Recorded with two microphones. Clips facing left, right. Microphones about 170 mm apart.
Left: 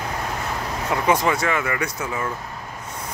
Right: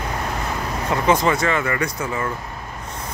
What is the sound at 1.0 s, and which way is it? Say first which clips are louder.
Speech: right 2 dB; 10° left (ahead or behind).